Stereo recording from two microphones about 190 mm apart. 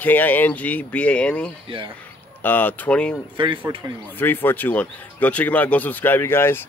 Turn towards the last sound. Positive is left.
turn(degrees=10)  # may be behind; listen again after turning